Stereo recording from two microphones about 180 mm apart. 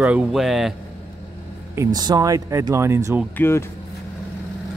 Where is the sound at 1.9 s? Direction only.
20° right (ahead or behind).